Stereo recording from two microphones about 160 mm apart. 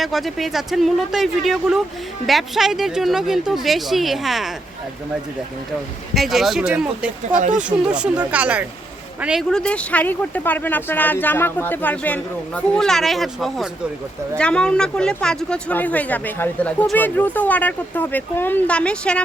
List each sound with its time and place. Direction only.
0.0 s speech: centre (ahead or behind)
6.1 s speech: centre (ahead or behind)
7.3 s speech: 50° right (ahead or behind)
7.9 s speech: 5° right (ahead or behind)